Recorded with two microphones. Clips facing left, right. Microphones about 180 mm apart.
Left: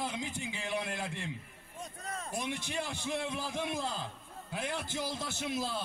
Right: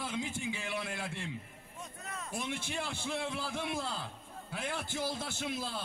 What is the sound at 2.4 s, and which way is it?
A man's voice, 15° left (ahead or behind).